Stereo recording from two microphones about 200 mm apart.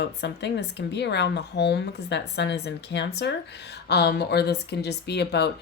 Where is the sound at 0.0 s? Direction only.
60° left (ahead or behind).